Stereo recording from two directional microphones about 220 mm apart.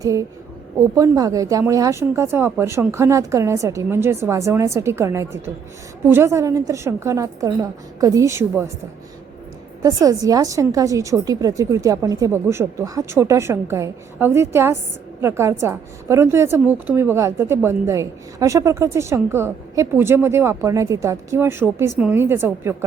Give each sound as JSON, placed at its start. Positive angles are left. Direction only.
{"t": 0.0, "sound": "a woman's voice", "side_deg": -15}
{"t": 9.8, "sound": "a woman's voice", "side_deg": -15}